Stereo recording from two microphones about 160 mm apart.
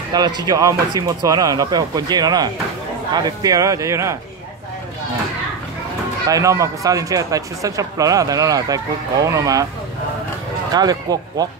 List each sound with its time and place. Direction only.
0.1 s speech: 25° right (ahead or behind)
6.2 s speech: 20° right (ahead or behind)
10.7 s speech: 25° right (ahead or behind)